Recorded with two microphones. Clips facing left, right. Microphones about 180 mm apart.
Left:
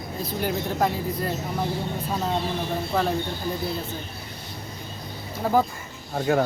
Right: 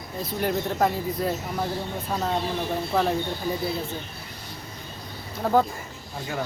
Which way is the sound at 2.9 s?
Centre (ahead or behind).